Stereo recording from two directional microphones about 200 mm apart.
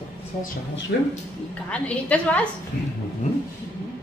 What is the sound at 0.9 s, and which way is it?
Speech, 55° left (ahead or behind).